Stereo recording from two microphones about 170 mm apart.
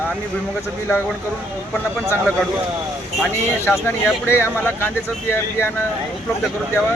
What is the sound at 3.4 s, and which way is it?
Speech, 15° left (ahead or behind).